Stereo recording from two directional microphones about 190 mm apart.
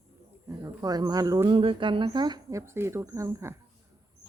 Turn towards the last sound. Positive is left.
turn(degrees=-15)  # may be behind; listen again after turning